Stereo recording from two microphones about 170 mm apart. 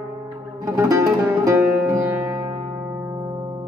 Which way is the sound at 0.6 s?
15° right (ahead or behind).